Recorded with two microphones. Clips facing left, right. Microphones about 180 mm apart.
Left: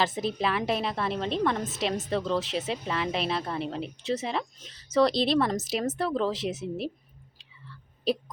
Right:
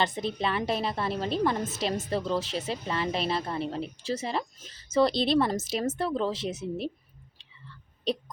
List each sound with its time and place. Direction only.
0.0 s a woman's voice: centre (ahead or behind)
8.1 s a woman's voice: centre (ahead or behind)